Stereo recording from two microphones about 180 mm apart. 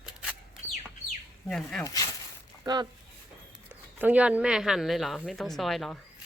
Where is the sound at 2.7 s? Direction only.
25° right (ahead or behind).